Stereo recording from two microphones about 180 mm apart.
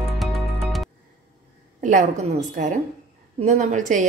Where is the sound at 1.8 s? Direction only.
45° right (ahead or behind).